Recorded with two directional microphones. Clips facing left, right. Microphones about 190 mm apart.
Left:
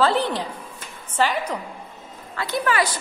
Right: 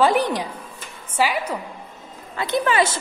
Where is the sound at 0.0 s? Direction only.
15° right (ahead or behind).